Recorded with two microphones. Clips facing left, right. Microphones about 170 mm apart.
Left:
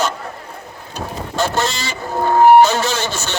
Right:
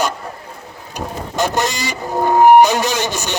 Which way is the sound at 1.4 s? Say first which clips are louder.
Right 1 dB; 15° right (ahead or behind).